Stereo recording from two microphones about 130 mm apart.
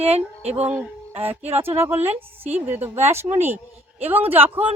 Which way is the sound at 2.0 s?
55° right (ahead or behind).